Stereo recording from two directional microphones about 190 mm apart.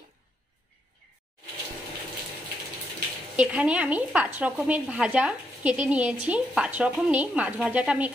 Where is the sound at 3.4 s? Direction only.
5° right (ahead or behind).